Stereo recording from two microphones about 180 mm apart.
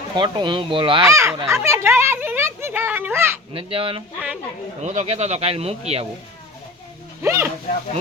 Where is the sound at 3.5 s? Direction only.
30° right (ahead or behind).